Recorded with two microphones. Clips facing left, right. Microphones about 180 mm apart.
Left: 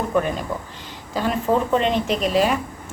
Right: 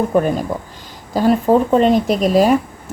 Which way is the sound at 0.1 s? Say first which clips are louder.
Right 5 dB; 40° right (ahead or behind).